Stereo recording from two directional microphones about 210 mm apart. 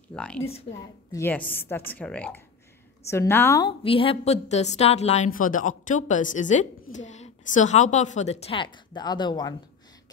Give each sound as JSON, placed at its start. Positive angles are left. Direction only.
{"t": 0.1, "sound": "a woman's voice", "side_deg": 5}